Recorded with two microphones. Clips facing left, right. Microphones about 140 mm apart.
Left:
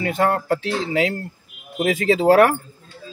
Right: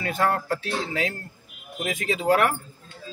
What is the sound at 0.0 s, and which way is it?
Speech, 25° left (ahead or behind).